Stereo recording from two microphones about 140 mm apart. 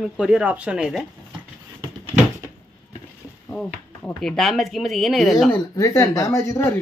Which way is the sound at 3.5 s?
5° left (ahead or behind).